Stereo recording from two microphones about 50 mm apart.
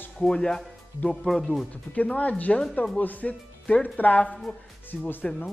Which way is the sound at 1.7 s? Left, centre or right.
Left.